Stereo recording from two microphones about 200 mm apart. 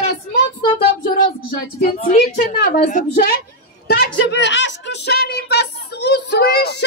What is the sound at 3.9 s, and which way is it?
A woman's voice, 60° left (ahead or behind).